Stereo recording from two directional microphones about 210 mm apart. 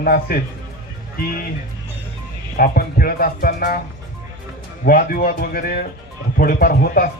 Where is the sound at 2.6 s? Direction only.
45° left (ahead or behind).